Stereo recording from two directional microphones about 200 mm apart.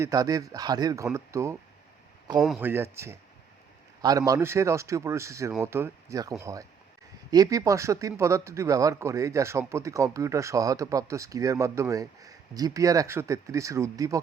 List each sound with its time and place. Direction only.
0.0 s speech: 15° right (ahead or behind)
2.6 s speech: 10° right (ahead or behind)